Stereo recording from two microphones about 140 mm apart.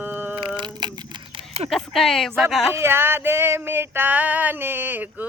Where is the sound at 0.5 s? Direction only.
35° right (ahead or behind).